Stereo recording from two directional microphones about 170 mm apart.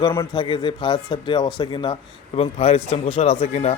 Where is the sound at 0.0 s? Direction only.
25° left (ahead or behind).